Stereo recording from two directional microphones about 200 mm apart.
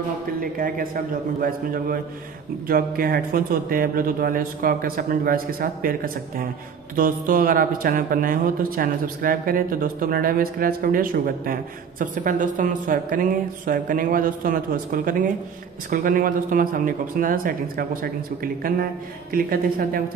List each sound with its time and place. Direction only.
0.4 s speech: 45° right (ahead or behind)